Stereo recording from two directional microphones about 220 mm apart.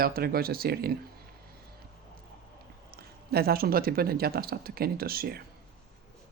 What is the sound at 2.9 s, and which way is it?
Speech, 45° right (ahead or behind).